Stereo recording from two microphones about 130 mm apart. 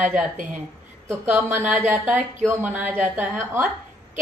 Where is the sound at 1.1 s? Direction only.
15° right (ahead or behind).